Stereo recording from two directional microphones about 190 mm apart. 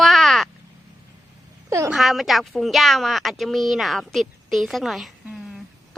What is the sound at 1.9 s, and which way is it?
A woman's voice, centre (ahead or behind).